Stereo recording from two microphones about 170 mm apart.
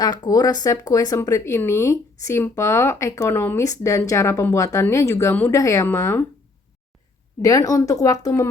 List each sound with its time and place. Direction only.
0.0 s speech: 25° left (ahead or behind)
7.4 s speech: 20° left (ahead or behind)